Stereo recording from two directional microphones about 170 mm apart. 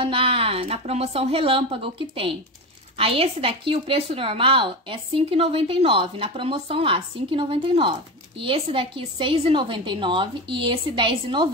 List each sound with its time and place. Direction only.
0.0 s a woman's voice: 30° right (ahead or behind)